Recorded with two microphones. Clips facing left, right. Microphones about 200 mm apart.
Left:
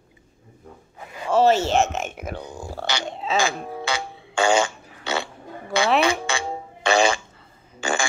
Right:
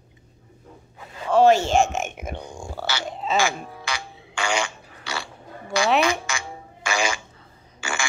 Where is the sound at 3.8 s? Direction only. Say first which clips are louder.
Left 5 dB; 25° left (ahead or behind).